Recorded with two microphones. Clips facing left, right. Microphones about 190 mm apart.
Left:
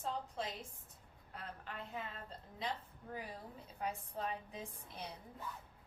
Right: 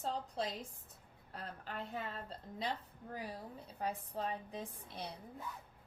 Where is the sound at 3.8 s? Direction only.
35° right (ahead or behind).